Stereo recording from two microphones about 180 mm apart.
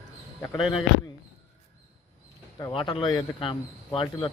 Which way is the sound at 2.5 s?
25° left (ahead or behind).